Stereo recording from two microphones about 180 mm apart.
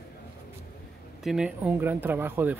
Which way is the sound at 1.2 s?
5° right (ahead or behind).